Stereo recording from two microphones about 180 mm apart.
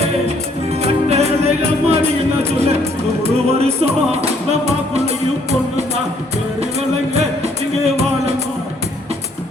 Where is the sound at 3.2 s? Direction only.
35° right (ahead or behind).